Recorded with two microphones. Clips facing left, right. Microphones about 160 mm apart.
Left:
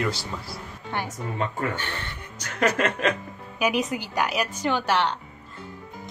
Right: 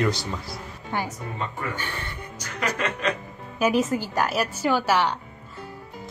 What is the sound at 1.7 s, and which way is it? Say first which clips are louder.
Music: even; 10° right (ahead or behind).